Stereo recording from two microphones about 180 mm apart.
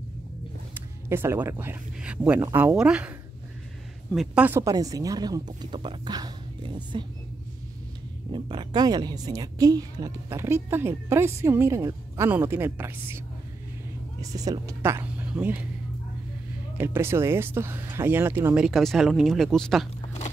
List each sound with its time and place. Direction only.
0.7 s a woman's voice: 15° right (ahead or behind)
8.3 s a woman's voice: 25° right (ahead or behind)
14.3 s a woman's voice: 20° right (ahead or behind)
16.7 s speech: 15° right (ahead or behind)